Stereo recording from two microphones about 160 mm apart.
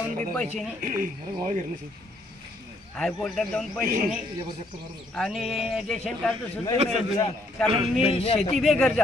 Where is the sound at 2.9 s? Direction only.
5° left (ahead or behind).